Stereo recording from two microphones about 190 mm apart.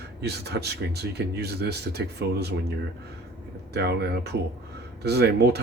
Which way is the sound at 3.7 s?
60° right (ahead or behind).